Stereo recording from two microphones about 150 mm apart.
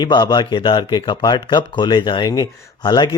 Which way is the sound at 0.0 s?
30° left (ahead or behind).